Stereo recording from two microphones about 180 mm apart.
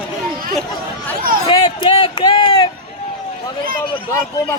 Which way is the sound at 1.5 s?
25° left (ahead or behind).